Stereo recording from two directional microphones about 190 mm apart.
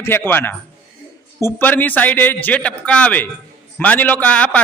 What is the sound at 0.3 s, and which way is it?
A man's voice, 10° left (ahead or behind).